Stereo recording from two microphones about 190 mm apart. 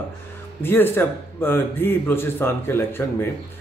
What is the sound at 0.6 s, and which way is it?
Speech, 10° left (ahead or behind).